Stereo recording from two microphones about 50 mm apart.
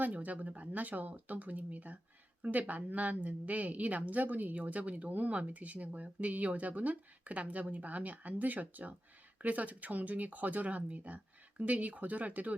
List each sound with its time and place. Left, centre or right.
0.0 s a woman's voice: right